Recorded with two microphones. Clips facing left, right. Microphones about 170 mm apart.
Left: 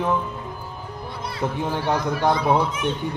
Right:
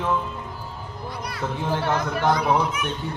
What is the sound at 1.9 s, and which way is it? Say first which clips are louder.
Speech: left 2 dB; 25° left (ahead or behind).